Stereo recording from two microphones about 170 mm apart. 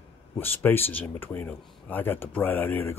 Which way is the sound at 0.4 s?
10° left (ahead or behind).